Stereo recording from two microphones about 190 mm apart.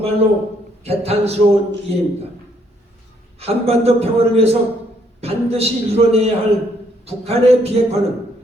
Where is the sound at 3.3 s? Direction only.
35° right (ahead or behind).